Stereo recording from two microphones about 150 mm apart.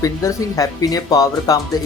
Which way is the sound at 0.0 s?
20° left (ahead or behind).